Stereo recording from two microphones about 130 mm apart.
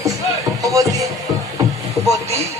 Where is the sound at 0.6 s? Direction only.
25° right (ahead or behind).